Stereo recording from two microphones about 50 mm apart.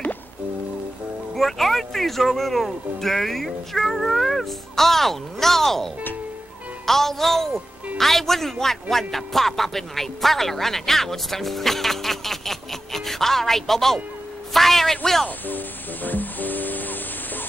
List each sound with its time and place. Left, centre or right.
1.3 s speech: centre
6.9 s speech: centre
15.2 s music: left